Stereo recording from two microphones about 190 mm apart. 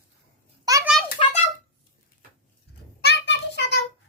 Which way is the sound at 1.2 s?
30° left (ahead or behind).